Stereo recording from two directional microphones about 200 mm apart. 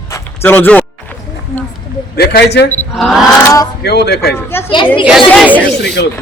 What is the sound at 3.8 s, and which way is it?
Speech, 55° left (ahead or behind).